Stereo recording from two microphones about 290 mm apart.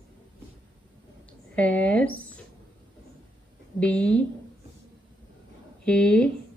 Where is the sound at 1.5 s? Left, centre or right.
Centre.